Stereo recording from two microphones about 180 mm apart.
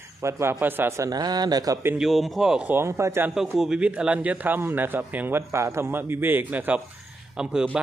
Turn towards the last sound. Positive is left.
turn(degrees=-5)  # may be behind; listen again after turning